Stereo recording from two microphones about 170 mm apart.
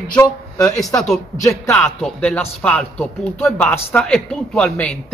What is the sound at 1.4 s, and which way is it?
A man's voice, 15° left (ahead or behind).